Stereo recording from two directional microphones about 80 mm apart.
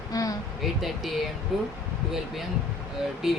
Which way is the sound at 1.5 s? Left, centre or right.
Centre.